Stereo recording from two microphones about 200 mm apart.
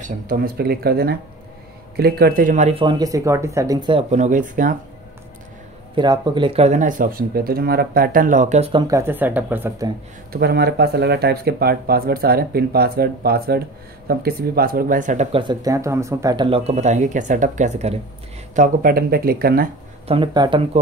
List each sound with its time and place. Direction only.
0.3 s speech: 50° right (ahead or behind); by 4.0 s 20° right (ahead or behind)
4.1 s speech: 40° right (ahead or behind)
5.9 s speech: 20° right (ahead or behind)
8.8 s speech: 15° right (ahead or behind)
10.3 s speech: 50° right (ahead or behind)
15.3 s speech: 20° right (ahead or behind); by 19.7 s 45° right (ahead or behind)
20.1 s speech: 25° right (ahead or behind)